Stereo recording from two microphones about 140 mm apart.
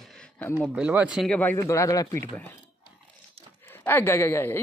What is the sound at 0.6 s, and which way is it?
Speech, 10° right (ahead or behind).